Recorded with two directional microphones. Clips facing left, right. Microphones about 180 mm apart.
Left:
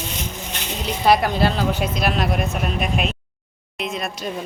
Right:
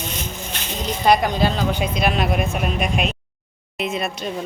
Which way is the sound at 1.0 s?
5° left (ahead or behind).